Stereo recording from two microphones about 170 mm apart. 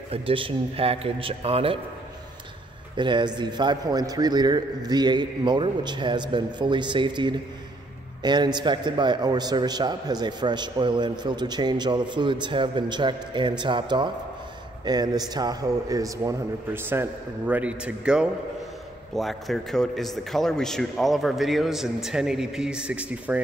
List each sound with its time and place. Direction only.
0.1 s a man's voice: 35° right (ahead or behind)
3.0 s a man's voice: 25° right (ahead or behind); by 23.4 s 10° right (ahead or behind)